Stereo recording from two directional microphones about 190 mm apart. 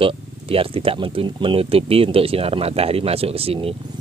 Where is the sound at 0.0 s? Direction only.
30° right (ahead or behind).